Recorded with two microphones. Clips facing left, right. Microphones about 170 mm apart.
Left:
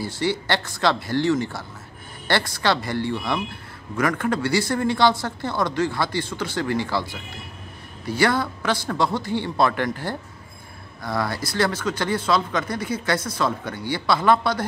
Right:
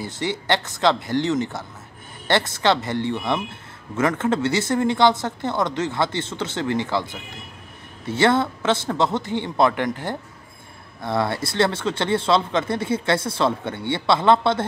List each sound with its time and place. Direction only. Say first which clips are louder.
0.0 s speech: left 2 dB; 20° right (ahead or behind)